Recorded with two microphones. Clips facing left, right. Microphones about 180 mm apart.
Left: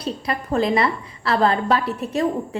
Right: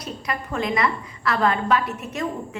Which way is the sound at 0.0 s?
30° left (ahead or behind).